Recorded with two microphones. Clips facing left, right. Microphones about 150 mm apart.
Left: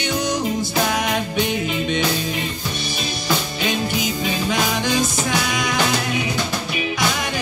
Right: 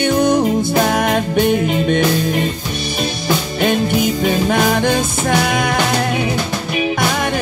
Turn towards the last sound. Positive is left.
turn(degrees=-55)  # may be behind; listen again after turning